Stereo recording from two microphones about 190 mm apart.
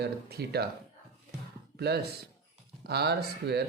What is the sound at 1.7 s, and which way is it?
Speech, 60° right (ahead or behind).